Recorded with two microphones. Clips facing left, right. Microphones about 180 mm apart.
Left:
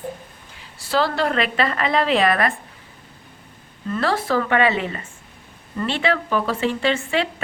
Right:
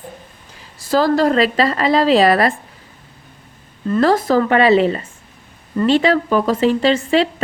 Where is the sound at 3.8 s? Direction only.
40° right (ahead or behind).